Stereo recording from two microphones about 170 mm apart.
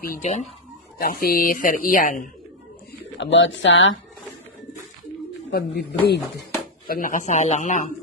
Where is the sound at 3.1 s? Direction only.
90° left.